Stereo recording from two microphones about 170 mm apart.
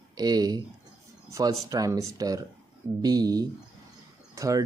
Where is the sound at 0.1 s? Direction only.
25° right (ahead or behind).